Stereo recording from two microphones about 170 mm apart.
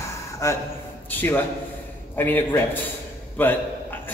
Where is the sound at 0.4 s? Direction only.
15° left (ahead or behind).